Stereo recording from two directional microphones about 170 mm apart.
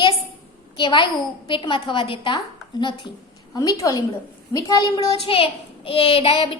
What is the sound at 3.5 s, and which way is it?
A woman's voice, 20° left (ahead or behind).